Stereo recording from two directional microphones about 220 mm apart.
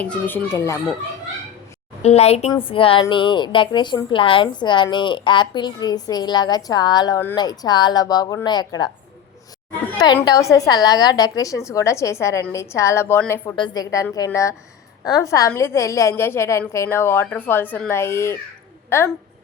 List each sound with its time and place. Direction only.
0.0 s a woman's voice: 5° left (ahead or behind)
2.0 s a woman's voice: 30° left (ahead or behind)
10.2 s a woman's voice: 15° left (ahead or behind)